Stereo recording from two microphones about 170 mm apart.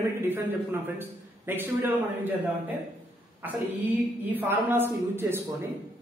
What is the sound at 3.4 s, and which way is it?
A man's voice, 10° right (ahead or behind).